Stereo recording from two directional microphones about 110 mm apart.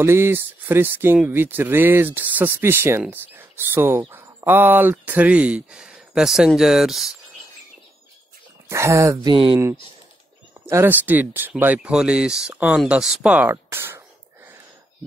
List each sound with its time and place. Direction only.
0.0 s speech: 20° right (ahead or behind); by 7.2 s 5° right (ahead or behind)
8.6 s speech: 25° right (ahead or behind)
9.2 s speech: 50° right (ahead or behind)
10.7 s speech: 20° right (ahead or behind)